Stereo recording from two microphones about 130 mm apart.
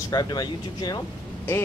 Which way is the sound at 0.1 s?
30° left (ahead or behind).